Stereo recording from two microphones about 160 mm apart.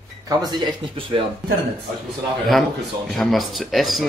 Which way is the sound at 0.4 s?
25° right (ahead or behind).